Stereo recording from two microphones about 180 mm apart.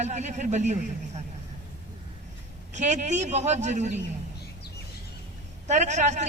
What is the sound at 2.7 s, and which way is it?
A man's voice, 45° right (ahead or behind).